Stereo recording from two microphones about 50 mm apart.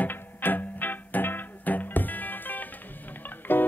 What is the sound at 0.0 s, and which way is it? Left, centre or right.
Music, left.